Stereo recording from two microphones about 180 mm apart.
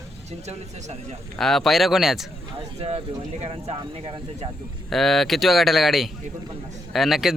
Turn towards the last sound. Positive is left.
turn(degrees=0)  # may be behind; listen again after turning